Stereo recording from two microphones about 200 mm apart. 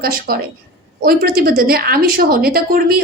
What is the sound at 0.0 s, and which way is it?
A woman's voice, 50° right (ahead or behind).